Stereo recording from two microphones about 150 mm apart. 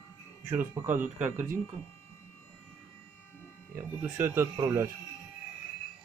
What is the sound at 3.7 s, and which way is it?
A man's voice, 15° right (ahead or behind).